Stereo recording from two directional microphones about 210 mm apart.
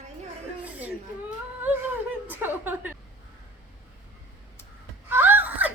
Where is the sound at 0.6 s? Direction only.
5° right (ahead or behind).